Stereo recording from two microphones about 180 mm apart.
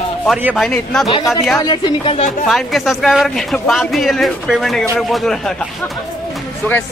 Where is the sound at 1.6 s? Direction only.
25° left (ahead or behind).